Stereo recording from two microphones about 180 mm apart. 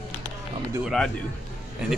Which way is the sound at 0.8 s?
5° left (ahead or behind).